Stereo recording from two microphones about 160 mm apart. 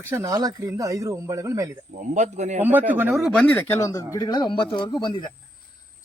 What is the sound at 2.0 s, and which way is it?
Speech, 50° right (ahead or behind).